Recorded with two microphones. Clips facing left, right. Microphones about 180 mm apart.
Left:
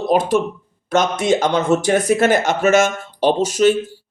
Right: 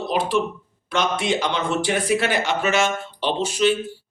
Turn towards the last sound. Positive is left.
turn(degrees=45)  # may be behind; listen again after turning